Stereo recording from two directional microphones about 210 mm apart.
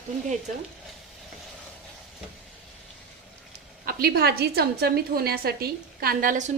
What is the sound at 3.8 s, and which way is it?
A woman's voice, 45° right (ahead or behind).